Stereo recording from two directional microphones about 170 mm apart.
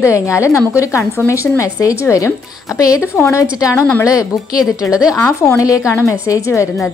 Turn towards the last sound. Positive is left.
turn(degrees=20)  # may be behind; listen again after turning